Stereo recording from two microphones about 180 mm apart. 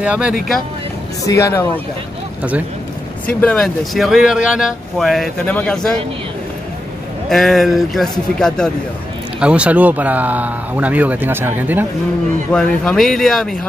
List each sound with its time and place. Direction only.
0.0 s speech: 5° right (ahead or behind)
1.2 s speech: 15° left (ahead or behind)
3.3 s speech: 5° left (ahead or behind)
7.2 s speech: centre (ahead or behind)
9.4 s speech: 5° right (ahead or behind)
12.5 s speech: 5° left (ahead or behind)